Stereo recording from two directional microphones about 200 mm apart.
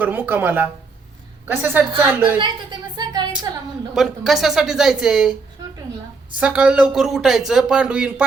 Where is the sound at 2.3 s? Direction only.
20° right (ahead or behind).